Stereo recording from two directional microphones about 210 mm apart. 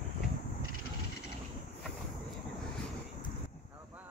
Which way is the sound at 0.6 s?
90° left.